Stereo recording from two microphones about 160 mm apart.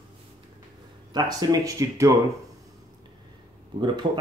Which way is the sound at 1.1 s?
25° right (ahead or behind).